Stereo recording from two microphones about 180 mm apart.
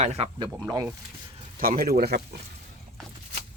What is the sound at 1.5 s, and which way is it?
Speech, 50° right (ahead or behind).